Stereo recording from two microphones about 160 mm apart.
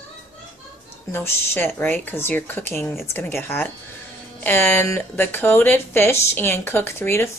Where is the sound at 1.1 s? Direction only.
15° left (ahead or behind).